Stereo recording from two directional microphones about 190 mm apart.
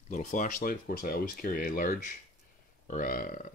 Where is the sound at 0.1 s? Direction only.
40° left (ahead or behind).